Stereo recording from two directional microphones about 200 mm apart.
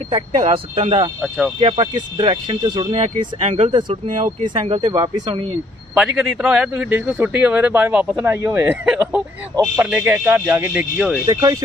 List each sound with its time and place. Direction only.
0.4 s speech: 30° right (ahead or behind)
5.9 s speech: 5° right (ahead or behind)